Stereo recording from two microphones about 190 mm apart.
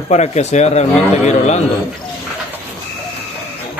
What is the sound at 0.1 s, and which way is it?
Speech, 35° left (ahead or behind).